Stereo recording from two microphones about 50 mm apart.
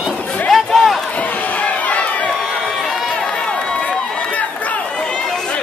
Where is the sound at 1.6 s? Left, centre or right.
Left.